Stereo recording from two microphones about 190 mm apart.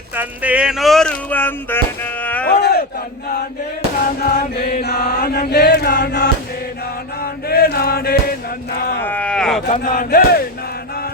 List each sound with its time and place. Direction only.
0.2 s speech: 5° right (ahead or behind); by 1.8 s 10° left (ahead or behind)
2.2 s a sound: 10° left (ahead or behind)
2.5 s speech: 60° left (ahead or behind)
4.2 s chant: 55° left (ahead or behind)
7.2 s male singing: 55° left (ahead or behind)
9.0 s speech: 10° left (ahead or behind)
9.6 s speech: 40° left (ahead or behind)